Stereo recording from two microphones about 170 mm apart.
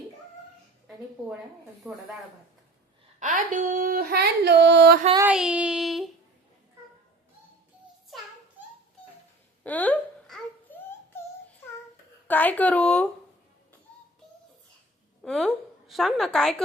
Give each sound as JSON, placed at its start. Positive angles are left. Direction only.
{"t": 1.8, "sound": "speech", "side_deg": -10}
{"t": 3.2, "sound": "a sound", "side_deg": -50}
{"t": 5.2, "sound": "child singing", "side_deg": -5}
{"t": 9.6, "sound": "babbling", "side_deg": 10}
{"t": 11.1, "sound": "music", "side_deg": 15}
{"t": 12.3, "sound": "speech", "side_deg": 10}
{"t": 15.2, "sound": "a woman's voice", "side_deg": 0}